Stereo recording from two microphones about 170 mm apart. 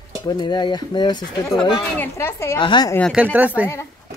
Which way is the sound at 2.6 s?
25° left (ahead or behind).